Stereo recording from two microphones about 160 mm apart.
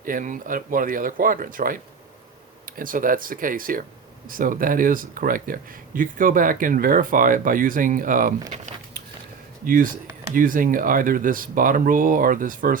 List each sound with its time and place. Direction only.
0.0 s speech: 60° right (ahead or behind)
8.5 s a sound: 50° right (ahead or behind)
9.6 s speech: 60° right (ahead or behind)